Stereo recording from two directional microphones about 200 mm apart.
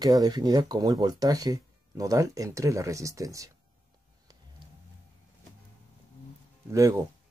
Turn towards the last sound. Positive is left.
turn(degrees=-15)  # may be behind; listen again after turning